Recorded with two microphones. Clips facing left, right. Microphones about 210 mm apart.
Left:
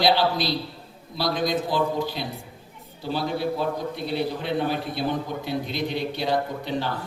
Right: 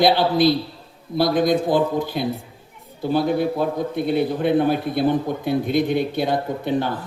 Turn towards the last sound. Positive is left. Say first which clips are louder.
# right 6 dB
turn(degrees=-55)  # may be behind; listen again after turning